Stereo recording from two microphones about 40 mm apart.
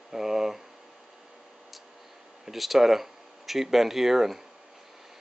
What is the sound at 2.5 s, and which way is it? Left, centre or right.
Speech, centre.